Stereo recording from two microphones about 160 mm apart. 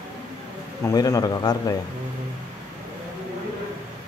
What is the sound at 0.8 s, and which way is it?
Speech, 20° left (ahead or behind).